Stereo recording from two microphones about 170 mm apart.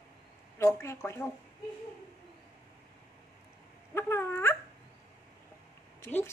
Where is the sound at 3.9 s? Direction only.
15° left (ahead or behind).